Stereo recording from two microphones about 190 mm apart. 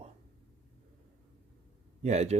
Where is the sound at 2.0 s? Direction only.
35° right (ahead or behind).